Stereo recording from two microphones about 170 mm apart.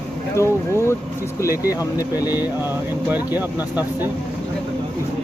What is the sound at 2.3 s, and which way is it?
Speech, 10° right (ahead or behind).